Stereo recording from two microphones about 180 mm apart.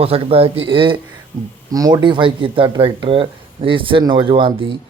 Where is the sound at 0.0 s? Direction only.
30° right (ahead or behind).